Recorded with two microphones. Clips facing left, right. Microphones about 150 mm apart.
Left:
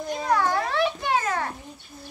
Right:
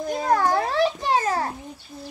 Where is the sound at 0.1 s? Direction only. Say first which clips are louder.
Right 2 dB; 45° right (ahead or behind).